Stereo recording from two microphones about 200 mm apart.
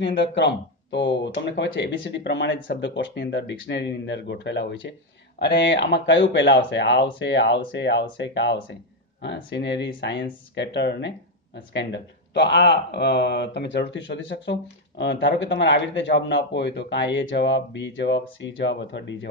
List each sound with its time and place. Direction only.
0.0 s speech: 60° left (ahead or behind)